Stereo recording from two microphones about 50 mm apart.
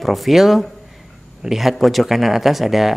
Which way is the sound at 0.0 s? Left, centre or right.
Centre.